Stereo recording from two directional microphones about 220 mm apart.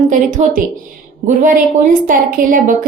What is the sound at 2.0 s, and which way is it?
Speech, 40° right (ahead or behind).